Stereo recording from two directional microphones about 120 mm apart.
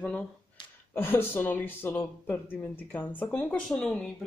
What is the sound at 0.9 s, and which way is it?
Speech, 20° left (ahead or behind).